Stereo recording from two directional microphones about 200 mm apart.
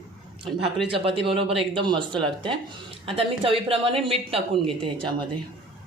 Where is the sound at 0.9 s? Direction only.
25° right (ahead or behind).